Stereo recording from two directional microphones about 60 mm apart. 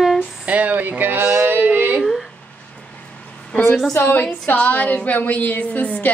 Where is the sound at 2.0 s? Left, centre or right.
Centre.